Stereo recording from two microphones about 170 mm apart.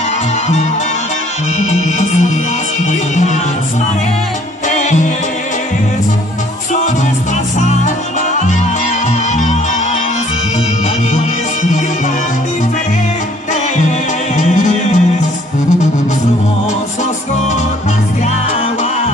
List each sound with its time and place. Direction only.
1.6 s music: 40° left (ahead or behind)
4.6 s music: 45° left (ahead or behind)
7.5 s music: 45° left (ahead or behind)
9.3 s music: 45° left (ahead or behind)
14.3 s music: 45° left (ahead or behind)